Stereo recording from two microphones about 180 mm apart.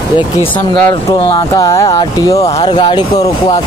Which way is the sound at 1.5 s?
20° left (ahead or behind).